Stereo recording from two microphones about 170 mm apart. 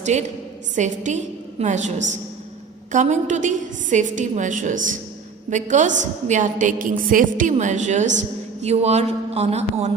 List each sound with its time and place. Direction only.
0.0 s a woman's voice: 40° right (ahead or behind)
2.9 s a woman's voice: 45° right (ahead or behind)